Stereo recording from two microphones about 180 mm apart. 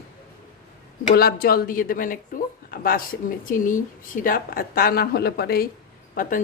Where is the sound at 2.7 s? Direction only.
55° left (ahead or behind).